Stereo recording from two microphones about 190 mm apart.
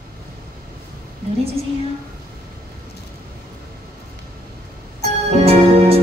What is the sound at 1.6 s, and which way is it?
Speech, 30° right (ahead or behind).